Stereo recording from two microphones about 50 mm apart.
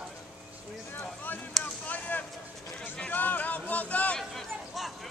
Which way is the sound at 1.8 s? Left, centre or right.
Left.